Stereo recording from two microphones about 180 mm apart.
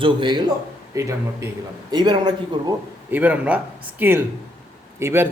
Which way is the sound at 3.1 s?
10° right (ahead or behind).